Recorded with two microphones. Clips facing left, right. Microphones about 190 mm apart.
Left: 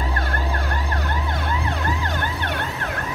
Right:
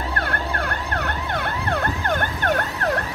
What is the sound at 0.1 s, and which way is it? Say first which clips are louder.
Emergency vehicle: even; 65° right (ahead or behind).